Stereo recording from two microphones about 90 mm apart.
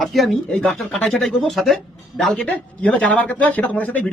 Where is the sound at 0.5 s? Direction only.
10° left (ahead or behind).